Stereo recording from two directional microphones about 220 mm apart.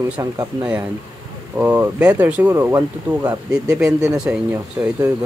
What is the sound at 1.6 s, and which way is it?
Speech, 5° right (ahead or behind).